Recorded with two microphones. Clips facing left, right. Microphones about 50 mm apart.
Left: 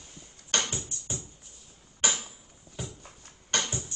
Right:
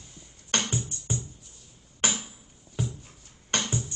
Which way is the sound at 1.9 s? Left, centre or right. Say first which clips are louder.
Right 1 dB; right.